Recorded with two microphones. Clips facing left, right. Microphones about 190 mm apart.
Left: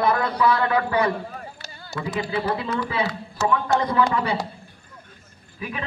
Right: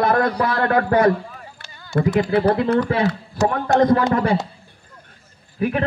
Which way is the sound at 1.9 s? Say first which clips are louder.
Right 9 dB; 55° right (ahead or behind).